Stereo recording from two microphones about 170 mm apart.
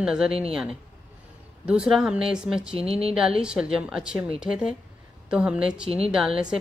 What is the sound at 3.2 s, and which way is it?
Speech, 5° right (ahead or behind).